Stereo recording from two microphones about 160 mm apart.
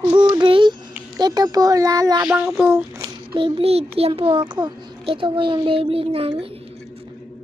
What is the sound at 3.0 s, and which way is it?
A child's voice, 30° right (ahead or behind).